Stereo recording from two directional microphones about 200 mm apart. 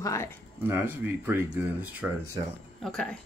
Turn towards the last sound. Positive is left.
turn(degrees=5)  # may be behind; listen again after turning